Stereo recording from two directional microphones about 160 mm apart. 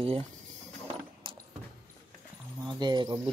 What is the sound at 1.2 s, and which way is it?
Keys jangling, 35° right (ahead or behind).